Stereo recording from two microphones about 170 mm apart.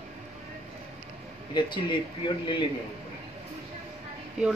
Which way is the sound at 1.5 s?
25° left (ahead or behind).